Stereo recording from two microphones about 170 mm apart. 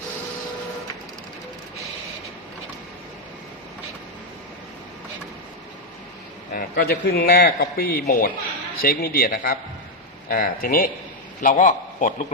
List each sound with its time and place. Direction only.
6.5 s a man's voice: 65° left (ahead or behind)
11.3 s a man's voice: 50° left (ahead or behind)